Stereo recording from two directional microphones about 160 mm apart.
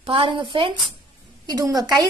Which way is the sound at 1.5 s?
25° right (ahead or behind).